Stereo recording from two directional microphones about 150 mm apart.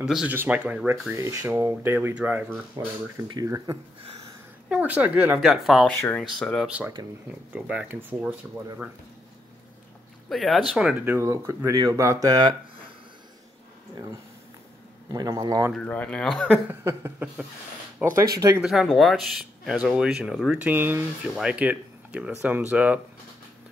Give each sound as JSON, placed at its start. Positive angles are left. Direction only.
{"t": 0.0, "sound": "speech", "side_deg": -5}
{"t": 1.1, "sound": "speech", "side_deg": -20}
{"t": 3.3, "sound": "speech", "side_deg": -20}
{"t": 4.6, "sound": "speech", "side_deg": -10}
{"t": 5.9, "sound": "speech", "side_deg": 15}
{"t": 7.0, "sound": "speech", "side_deg": -30}
{"t": 7.5, "sound": "speech", "side_deg": -10}
{"t": 10.3, "sound": "speech", "side_deg": 0}
{"t": 15.0, "sound": "speech", "side_deg": -25}
{"t": 15.7, "sound": "speech", "side_deg": 10}
{"t": 16.6, "sound": "speech", "side_deg": -15}
{"t": 18.6, "sound": "speech", "side_deg": -5}